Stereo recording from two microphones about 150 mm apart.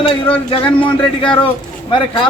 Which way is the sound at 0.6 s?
35° left (ahead or behind).